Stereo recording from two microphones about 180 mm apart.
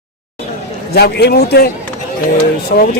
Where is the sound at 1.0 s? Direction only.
65° left (ahead or behind).